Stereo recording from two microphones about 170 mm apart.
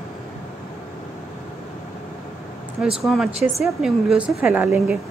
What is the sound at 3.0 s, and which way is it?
A woman's voice, centre (ahead or behind).